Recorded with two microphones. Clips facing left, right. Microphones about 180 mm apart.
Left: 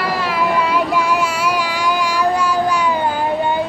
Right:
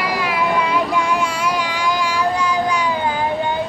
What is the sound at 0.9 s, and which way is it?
Child singing, 5° left (ahead or behind).